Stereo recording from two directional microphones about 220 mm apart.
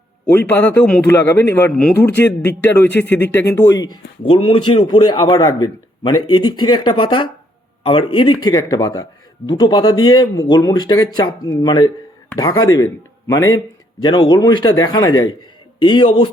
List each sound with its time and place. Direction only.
0.3 s speech: 10° left (ahead or behind)
4.2 s speech: 25° left (ahead or behind)
6.7 s a man's voice: 20° left (ahead or behind)